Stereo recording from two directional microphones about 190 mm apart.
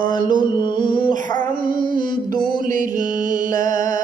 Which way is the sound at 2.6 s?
45° right (ahead or behind).